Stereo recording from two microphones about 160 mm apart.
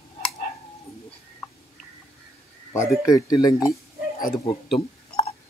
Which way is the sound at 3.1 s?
25° left (ahead or behind).